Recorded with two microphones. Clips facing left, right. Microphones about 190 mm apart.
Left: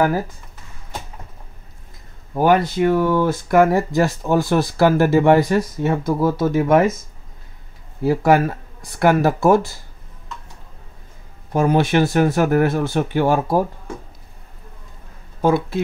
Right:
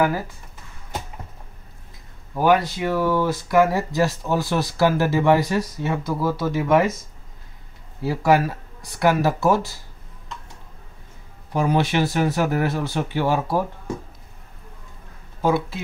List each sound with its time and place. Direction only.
2.3 s speech: 50° left (ahead or behind)
8.0 s speech: 50° left (ahead or behind)
11.5 s speech: 50° left (ahead or behind)